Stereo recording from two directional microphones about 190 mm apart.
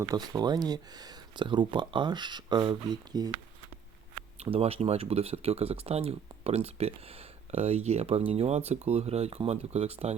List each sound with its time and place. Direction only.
0.0 s speech: 20° right (ahead or behind)
4.4 s speech: 30° right (ahead or behind)